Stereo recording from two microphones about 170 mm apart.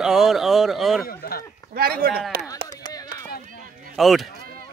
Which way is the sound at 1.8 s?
60° right (ahead or behind).